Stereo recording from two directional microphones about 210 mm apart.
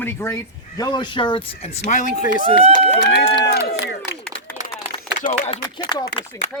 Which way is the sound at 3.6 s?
50° left (ahead or behind).